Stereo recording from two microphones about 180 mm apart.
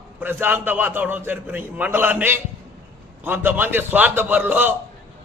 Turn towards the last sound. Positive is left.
turn(degrees=-10)  # may be behind; listen again after turning